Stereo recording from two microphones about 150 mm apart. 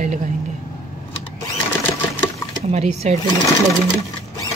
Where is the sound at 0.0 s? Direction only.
50° right (ahead or behind).